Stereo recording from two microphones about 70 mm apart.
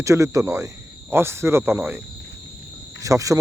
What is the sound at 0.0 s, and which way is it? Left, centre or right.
Speech, right.